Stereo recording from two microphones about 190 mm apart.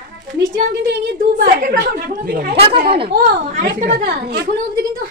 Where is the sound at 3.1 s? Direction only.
55° right (ahead or behind).